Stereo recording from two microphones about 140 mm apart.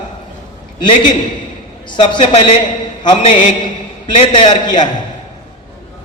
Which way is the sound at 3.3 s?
65° left (ahead or behind).